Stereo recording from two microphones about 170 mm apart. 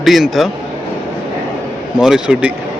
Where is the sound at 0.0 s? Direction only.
Centre (ahead or behind).